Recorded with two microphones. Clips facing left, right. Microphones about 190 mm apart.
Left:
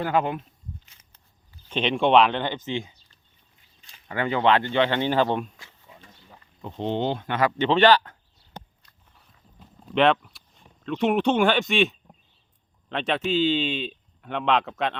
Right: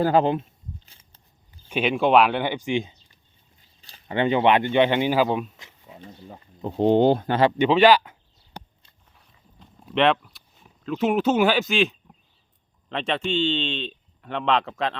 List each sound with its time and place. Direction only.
0.0 s speech: 30° right (ahead or behind)
0.9 s walk: 30° right (ahead or behind)
1.7 s speech: 5° right (ahead or behind)
3.8 s speech: 35° right (ahead or behind); by 5.5 s 5° right (ahead or behind)
5.5 s a sound: 20° right (ahead or behind)
6.2 s speech: 40° right (ahead or behind)
7.6 s speech: 10° right (ahead or behind)
9.9 s speech: centre (ahead or behind)